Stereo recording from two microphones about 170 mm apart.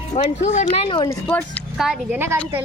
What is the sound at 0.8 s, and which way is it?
Speech, 25° left (ahead or behind).